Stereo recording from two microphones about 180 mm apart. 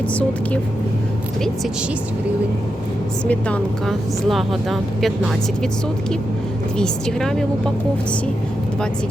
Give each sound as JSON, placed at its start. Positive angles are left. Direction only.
{"t": 0.1, "sound": "speech", "side_deg": 10}
{"t": 3.2, "sound": "speech", "side_deg": 5}
{"t": 6.7, "sound": "speech", "side_deg": 5}